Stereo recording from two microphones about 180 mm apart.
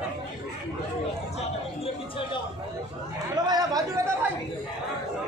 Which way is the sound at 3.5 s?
20° right (ahead or behind).